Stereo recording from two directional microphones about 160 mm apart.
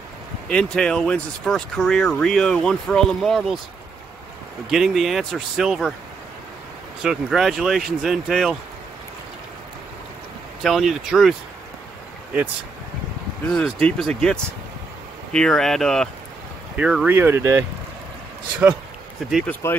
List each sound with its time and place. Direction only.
0.5 s speech: 5° left (ahead or behind)
4.6 s speech: centre (ahead or behind)
7.0 s speech: 5° right (ahead or behind)
10.6 s speech: centre (ahead or behind)
13.5 s speech: 5° left (ahead or behind); by 17.6 s 20° right (ahead or behind)
19.6 s speech: 15° left (ahead or behind)